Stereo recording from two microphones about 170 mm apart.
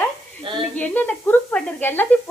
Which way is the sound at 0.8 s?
10° left (ahead or behind).